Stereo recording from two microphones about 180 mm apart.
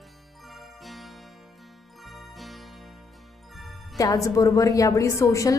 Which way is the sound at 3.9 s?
20° left (ahead or behind).